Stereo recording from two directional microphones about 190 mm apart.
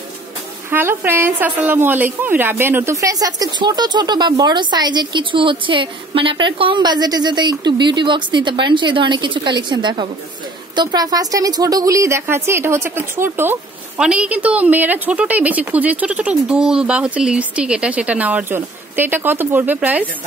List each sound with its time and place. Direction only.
0.7 s a woman's voice: 10° right (ahead or behind)